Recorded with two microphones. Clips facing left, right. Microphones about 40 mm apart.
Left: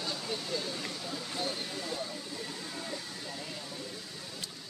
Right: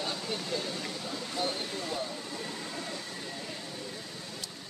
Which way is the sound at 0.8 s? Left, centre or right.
Centre.